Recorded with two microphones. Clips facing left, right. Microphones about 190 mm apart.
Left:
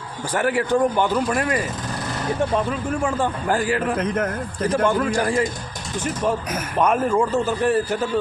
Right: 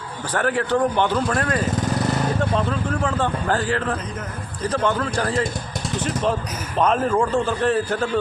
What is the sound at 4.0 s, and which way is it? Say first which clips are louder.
Speech: left 9 dB; 60° left (ahead or behind).